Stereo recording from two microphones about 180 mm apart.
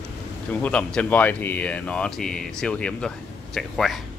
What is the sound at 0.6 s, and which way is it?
Speech, 5° left (ahead or behind).